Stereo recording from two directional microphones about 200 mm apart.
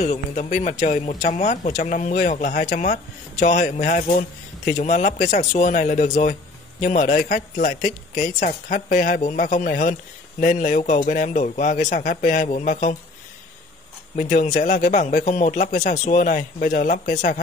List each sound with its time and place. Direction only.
0.0 s a man's voice: 35° left (ahead or behind)
14.1 s a man's voice: 40° left (ahead or behind)